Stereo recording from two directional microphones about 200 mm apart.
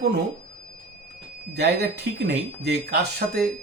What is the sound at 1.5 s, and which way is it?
A man's voice, 55° right (ahead or behind).